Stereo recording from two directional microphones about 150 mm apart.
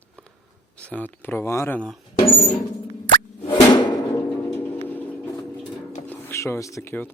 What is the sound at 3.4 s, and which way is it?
Plop, 30° left (ahead or behind).